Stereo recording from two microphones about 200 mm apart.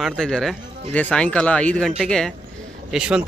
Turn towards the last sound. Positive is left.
turn(degrees=-5)  # may be behind; listen again after turning